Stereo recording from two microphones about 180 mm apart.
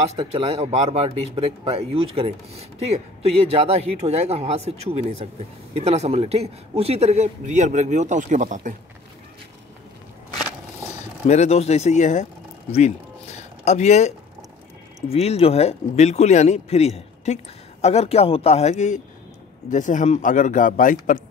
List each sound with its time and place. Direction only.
0.0 s speech: 35° right (ahead or behind)
11.2 s speech: 40° left (ahead or behind)
12.7 s a sound: 40° left (ahead or behind)
15.0 s speech: 35° left (ahead or behind)